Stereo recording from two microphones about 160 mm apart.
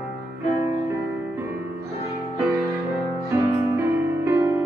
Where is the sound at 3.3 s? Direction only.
15° right (ahead or behind).